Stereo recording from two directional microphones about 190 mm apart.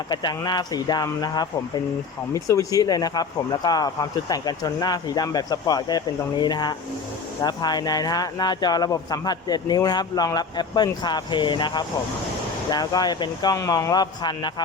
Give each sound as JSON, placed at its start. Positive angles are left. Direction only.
{"t": 0.1, "sound": "speech", "side_deg": 20}